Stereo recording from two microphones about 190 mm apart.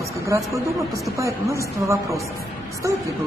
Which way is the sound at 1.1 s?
15° right (ahead or behind).